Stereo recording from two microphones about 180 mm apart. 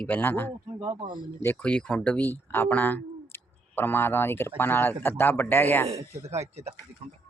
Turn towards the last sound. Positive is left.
turn(degrees=-35)  # may be behind; listen again after turning